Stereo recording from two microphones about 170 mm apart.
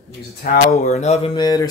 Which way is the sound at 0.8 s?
40° left (ahead or behind).